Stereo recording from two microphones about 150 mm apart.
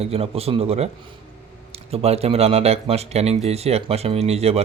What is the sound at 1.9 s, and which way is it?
A man's voice, 45° right (ahead or behind).